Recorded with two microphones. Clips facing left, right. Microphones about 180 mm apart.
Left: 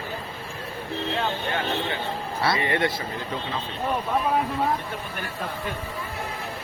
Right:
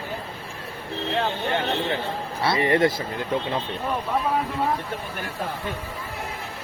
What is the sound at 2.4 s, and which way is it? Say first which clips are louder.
Speech: right 4 dB; 30° right (ahead or behind).